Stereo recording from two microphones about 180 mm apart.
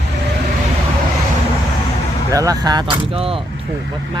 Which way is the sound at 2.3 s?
20° right (ahead or behind).